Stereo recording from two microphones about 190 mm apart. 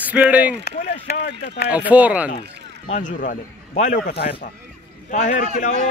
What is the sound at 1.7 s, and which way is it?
Speech, 10° right (ahead or behind).